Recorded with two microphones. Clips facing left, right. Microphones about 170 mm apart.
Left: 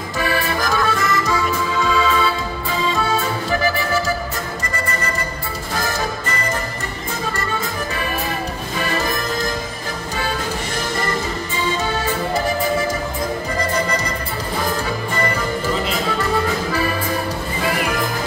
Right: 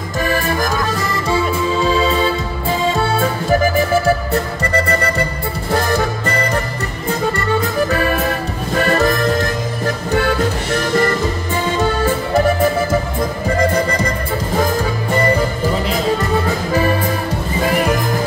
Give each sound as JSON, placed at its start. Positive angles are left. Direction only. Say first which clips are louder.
{"t": 0.2, "sound": "accordion", "louder": "right 3 dB", "side_deg": -45}
{"t": 4.0, "sound": "music", "louder": "right 7 dB", "side_deg": -65}
{"t": 8.7, "sound": "music", "louder": "right 8 dB", "side_deg": -60}